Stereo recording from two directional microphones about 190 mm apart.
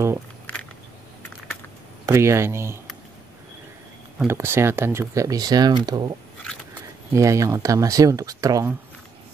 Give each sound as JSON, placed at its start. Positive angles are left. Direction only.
{"t": 2.0, "sound": "speech", "side_deg": -15}
{"t": 4.2, "sound": "speech", "side_deg": -10}